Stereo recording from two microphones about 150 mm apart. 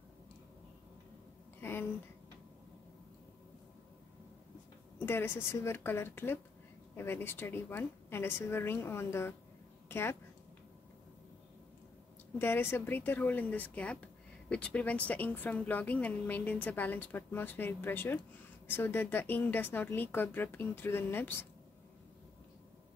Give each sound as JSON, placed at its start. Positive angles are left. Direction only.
{"t": 1.6, "sound": "a sound", "side_deg": 15}
{"t": 5.0, "sound": "a woman's voice", "side_deg": 15}
{"t": 12.4, "sound": "speech", "side_deg": 15}